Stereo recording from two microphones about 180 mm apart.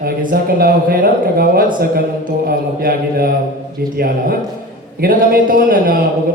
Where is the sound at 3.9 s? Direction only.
55° right (ahead or behind).